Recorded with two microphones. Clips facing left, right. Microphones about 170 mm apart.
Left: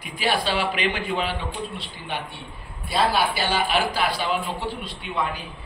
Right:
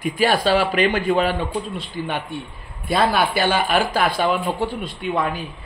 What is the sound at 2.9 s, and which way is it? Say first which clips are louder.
Speech: right 3 dB; 55° right (ahead or behind).